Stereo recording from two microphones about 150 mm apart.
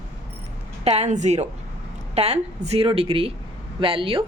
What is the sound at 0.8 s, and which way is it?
A woman's voice, 45° right (ahead or behind).